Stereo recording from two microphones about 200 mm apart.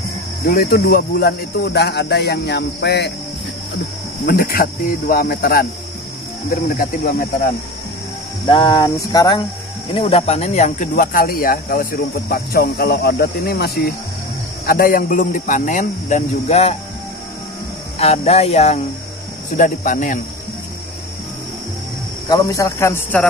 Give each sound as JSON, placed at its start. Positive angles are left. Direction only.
{"t": 0.5, "sound": "speech", "side_deg": 50}
{"t": 4.3, "sound": "speech", "side_deg": 45}
{"t": 8.5, "sound": "cricket", "side_deg": 25}
{"t": 9.9, "sound": "speech", "side_deg": 30}
{"t": 17.9, "sound": "speech", "side_deg": 30}
{"t": 22.3, "sound": "speech", "side_deg": 15}